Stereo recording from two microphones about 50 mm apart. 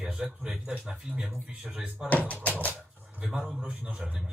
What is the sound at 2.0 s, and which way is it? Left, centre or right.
Speech, left.